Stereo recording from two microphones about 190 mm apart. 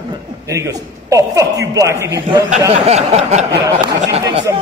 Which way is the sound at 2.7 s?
35° right (ahead or behind).